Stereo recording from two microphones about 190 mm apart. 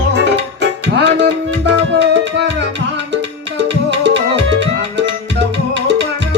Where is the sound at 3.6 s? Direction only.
70° right (ahead or behind).